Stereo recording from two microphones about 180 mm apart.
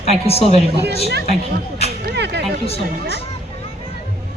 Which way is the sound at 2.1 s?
70° right (ahead or behind).